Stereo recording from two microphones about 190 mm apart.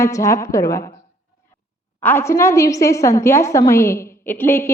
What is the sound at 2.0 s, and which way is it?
A woman's voice, 10° left (ahead or behind).